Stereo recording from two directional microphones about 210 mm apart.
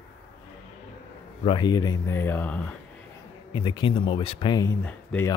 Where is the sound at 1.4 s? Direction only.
20° left (ahead or behind).